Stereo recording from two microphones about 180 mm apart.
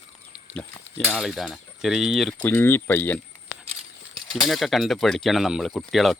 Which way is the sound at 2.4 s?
10° left (ahead or behind).